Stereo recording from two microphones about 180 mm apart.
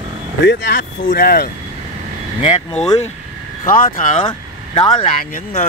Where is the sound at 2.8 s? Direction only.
40° left (ahead or behind).